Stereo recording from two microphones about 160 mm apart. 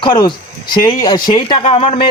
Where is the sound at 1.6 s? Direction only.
40° left (ahead or behind).